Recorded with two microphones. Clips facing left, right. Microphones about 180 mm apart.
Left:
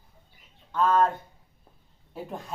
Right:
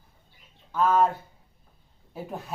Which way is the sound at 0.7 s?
5° right (ahead or behind).